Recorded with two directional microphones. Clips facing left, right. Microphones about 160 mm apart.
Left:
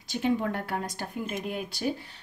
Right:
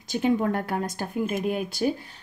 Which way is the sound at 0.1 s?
45° right (ahead or behind).